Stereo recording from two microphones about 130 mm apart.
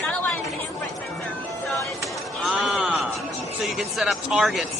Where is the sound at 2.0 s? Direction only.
Centre (ahead or behind).